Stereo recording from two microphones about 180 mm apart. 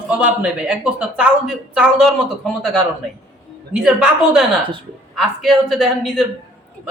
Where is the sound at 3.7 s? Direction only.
5° right (ahead or behind).